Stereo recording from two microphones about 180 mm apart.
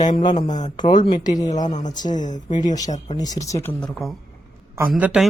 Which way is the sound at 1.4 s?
40° left (ahead or behind).